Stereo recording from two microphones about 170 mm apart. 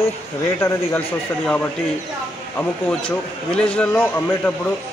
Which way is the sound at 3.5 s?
5° left (ahead or behind).